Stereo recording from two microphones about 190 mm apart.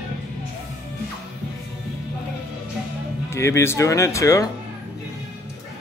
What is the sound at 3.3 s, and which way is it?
Speech, 15° left (ahead or behind).